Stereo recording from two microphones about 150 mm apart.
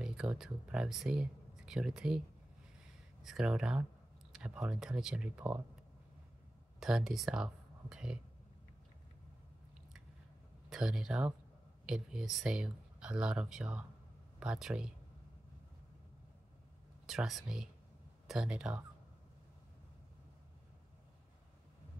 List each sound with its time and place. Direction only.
0.0 s speech: 5° right (ahead or behind)
6.8 s speech: 5° right (ahead or behind)
10.7 s speech: 5° right (ahead or behind)
17.0 s speech: 5° right (ahead or behind)